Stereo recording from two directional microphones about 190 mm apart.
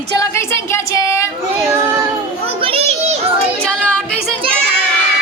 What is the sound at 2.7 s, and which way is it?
Children playing, 30° right (ahead or behind).